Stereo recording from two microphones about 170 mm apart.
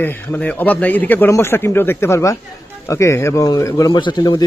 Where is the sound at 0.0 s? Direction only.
10° left (ahead or behind).